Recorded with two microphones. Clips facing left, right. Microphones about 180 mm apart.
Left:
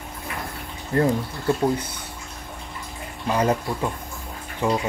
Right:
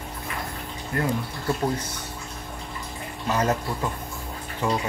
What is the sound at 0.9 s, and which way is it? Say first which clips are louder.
Speech: left 7 dB; 30° left (ahead or behind).